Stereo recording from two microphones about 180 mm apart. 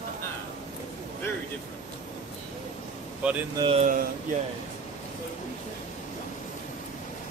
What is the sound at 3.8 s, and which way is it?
Speech, 50° right (ahead or behind).